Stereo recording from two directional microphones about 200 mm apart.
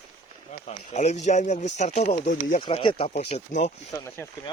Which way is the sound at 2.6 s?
25° left (ahead or behind).